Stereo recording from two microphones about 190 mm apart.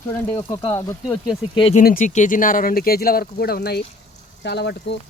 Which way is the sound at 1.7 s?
45° left (ahead or behind).